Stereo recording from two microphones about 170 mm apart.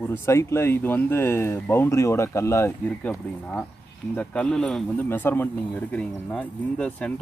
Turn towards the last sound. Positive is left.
turn(degrees=5)  # may be behind; listen again after turning